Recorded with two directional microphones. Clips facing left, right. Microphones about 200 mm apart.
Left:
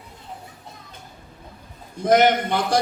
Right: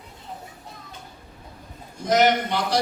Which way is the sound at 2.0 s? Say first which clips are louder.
Left 3 dB; 55° left (ahead or behind).